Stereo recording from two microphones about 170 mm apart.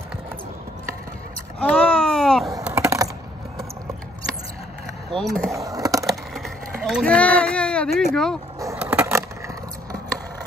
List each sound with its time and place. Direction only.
1.6 s baby cry: 5° left (ahead or behind)
2.6 s typing: 5° right (ahead or behind)
5.1 s speech: 5° left (ahead or behind)
5.5 s a sound: 20° right (ahead or behind)
6.0 s a sound: centre (ahead or behind)
8.7 s skateboard: 10° right (ahead or behind)